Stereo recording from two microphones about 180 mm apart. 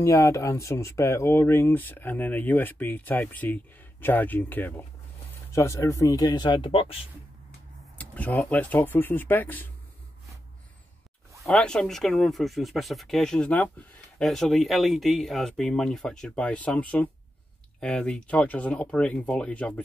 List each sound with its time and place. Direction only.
0.0 s speech: 15° left (ahead or behind)
8.0 s speech: 10° left (ahead or behind)
11.4 s speech: 5° left (ahead or behind)